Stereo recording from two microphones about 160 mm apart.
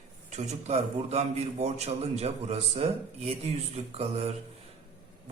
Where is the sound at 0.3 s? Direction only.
45° right (ahead or behind).